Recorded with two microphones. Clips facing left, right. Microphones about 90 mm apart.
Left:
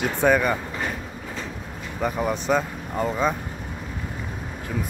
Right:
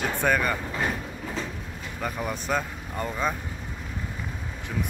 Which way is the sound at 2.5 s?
5° left (ahead or behind).